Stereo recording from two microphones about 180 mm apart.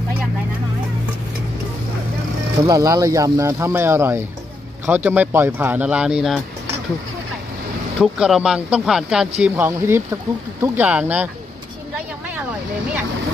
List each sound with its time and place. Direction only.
2.6 s speech: 20° right (ahead or behind); by 6.4 s 5° right (ahead or behind)
8.0 s speech: 5° right (ahead or behind)